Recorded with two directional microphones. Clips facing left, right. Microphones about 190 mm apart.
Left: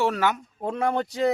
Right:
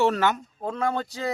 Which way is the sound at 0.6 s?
20° left (ahead or behind).